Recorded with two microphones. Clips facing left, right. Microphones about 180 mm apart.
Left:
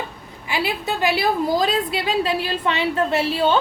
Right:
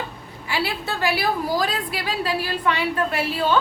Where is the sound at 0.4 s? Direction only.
15° left (ahead or behind).